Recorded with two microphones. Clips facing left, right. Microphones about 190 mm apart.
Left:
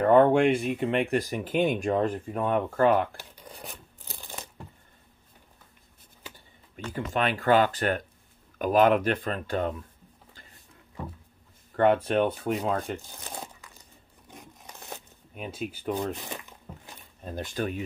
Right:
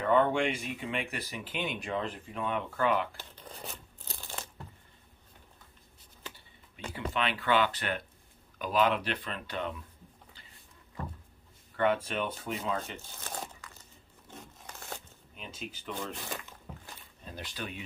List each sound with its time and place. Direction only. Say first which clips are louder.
0.0 s speech: left 8 dB; 50° left (ahead or behind)
3.2 s tearing: left 1 dB; 10° left (ahead or behind)
6.9 s speech: left 5 dB; 45° left (ahead or behind)
11.7 s speech: left 7 dB; 50° left (ahead or behind)
13.2 s crumpling: left 1 dB; 15° left (ahead or behind)
15.3 s speech: left 9 dB; 50° left (ahead or behind)
16.2 s a sound: left 2 dB; 20° left (ahead or behind)
17.2 s speech: left 10 dB; 50° left (ahead or behind)